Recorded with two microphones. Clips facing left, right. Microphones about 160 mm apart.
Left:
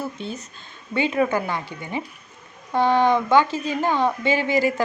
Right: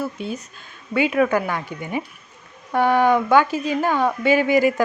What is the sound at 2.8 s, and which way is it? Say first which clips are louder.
Speech: right 1 dB; 10° right (ahead or behind).